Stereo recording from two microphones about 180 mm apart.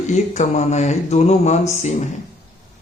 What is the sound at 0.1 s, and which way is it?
Speech, 40° left (ahead or behind).